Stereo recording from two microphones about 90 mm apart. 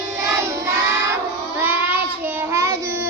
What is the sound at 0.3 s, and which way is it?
Child singing, 30° right (ahead or behind).